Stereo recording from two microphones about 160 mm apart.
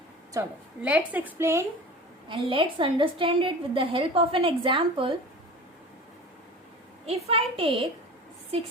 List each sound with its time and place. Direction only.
0.3 s a woman's voice: 10° right (ahead or behind)
2.3 s a woman's voice: 35° right (ahead or behind)
7.0 s a woman's voice: 40° right (ahead or behind)